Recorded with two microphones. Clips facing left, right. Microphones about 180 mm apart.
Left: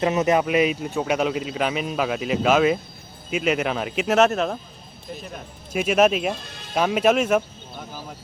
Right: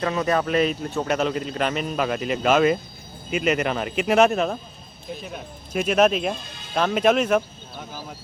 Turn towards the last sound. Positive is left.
turn(degrees=5)  # may be behind; listen again after turning